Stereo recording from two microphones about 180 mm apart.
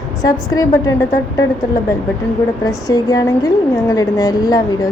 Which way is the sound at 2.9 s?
20° left (ahead or behind).